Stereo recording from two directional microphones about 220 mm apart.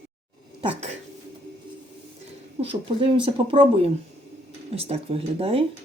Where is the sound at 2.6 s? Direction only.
25° right (ahead or behind).